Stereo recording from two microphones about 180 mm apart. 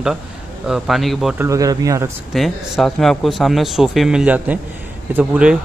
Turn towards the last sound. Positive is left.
turn(degrees=-5)  # may be behind; listen again after turning